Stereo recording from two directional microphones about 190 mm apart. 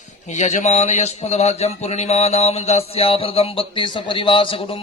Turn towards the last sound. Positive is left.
turn(degrees=30)  # may be behind; listen again after turning